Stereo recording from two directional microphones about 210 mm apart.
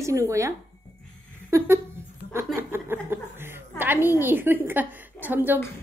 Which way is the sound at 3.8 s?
10° right (ahead or behind).